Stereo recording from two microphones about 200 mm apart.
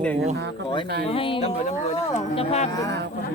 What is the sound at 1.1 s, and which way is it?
Speech, 25° left (ahead or behind).